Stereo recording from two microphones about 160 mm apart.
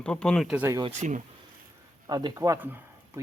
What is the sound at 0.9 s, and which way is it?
Speech, 50° right (ahead or behind).